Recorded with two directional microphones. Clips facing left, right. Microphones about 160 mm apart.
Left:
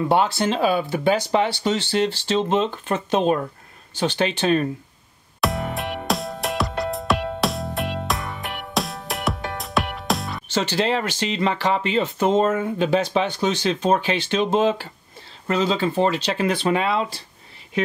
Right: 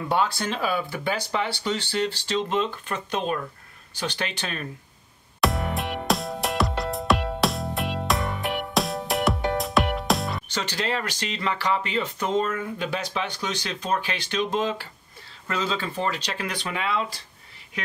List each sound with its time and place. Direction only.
0.1 s speech: 25° left (ahead or behind)
5.4 s music: centre (ahead or behind)
10.5 s speech: 25° left (ahead or behind)